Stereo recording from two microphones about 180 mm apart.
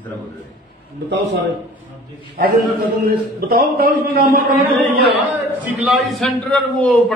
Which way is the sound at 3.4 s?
50° right (ahead or behind).